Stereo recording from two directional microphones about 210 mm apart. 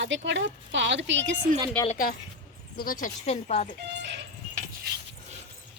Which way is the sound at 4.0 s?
55° right (ahead or behind).